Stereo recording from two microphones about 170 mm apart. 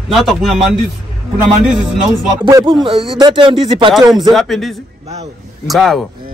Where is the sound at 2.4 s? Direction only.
25° right (ahead or behind).